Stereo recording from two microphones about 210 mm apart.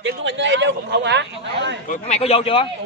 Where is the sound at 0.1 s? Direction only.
60° right (ahead or behind).